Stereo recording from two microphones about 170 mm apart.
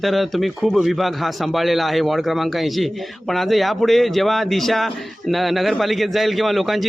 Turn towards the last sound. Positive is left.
turn(degrees=0)  # may be behind; listen again after turning